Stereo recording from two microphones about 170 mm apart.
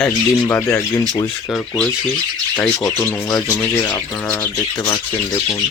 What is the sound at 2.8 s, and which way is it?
Speech, 15° left (ahead or behind).